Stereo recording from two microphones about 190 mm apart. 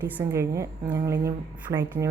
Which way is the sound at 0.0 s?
15° right (ahead or behind).